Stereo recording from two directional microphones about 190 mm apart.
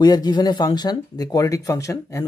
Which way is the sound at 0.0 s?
20° left (ahead or behind).